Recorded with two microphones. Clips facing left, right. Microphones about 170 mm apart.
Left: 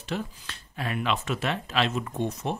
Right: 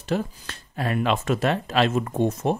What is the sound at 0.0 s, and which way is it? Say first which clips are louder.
Speech: right 6 dB; 45° right (ahead or behind).